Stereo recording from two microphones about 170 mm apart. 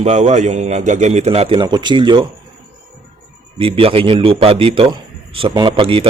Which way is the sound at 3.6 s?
35° right (ahead or behind).